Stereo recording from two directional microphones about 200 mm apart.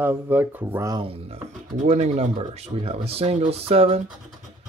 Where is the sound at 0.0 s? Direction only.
10° right (ahead or behind).